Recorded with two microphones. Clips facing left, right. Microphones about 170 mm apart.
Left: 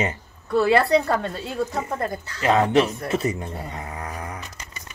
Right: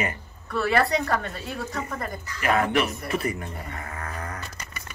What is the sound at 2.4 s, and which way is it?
Speech, 25° left (ahead or behind).